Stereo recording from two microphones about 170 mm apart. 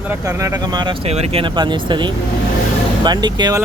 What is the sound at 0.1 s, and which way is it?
Speech, 20° right (ahead or behind).